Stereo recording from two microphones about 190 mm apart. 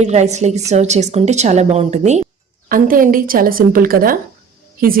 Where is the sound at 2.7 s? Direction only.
45° right (ahead or behind).